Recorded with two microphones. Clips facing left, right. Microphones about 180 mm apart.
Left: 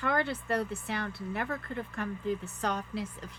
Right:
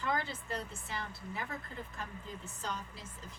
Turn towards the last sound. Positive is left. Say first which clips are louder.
# left 11 dB
turn(degrees=70)  # may be behind; listen again after turning